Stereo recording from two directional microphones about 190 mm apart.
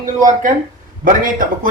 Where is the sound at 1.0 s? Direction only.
45° right (ahead or behind).